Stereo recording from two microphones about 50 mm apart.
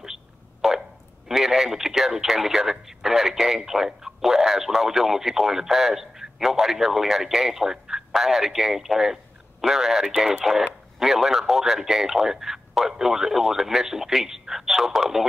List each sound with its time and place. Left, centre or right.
1.3 s speech: centre